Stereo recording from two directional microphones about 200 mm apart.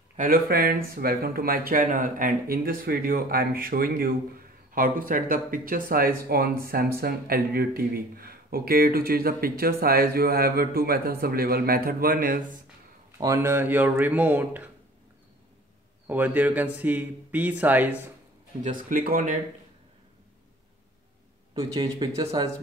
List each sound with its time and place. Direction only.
0.2 s speech: 50° right (ahead or behind)
13.2 s a man's voice: 15° right (ahead or behind)
16.1 s a man's voice: 10° right (ahead or behind)
18.6 s speech: 40° right (ahead or behind)
21.5 s speech: 20° right (ahead or behind)